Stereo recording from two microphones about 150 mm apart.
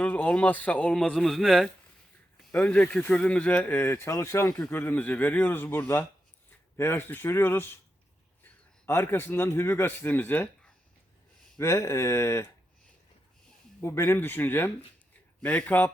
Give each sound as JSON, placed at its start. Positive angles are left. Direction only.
{"t": 0.0, "sound": "speech", "side_deg": 10}
{"t": 8.9, "sound": "speech", "side_deg": 15}
{"t": 13.8, "sound": "speech", "side_deg": 15}